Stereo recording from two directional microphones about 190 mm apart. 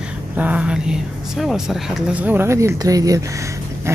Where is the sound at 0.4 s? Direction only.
5° right (ahead or behind).